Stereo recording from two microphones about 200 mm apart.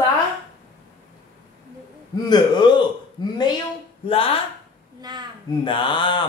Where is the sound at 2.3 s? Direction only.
20° left (ahead or behind).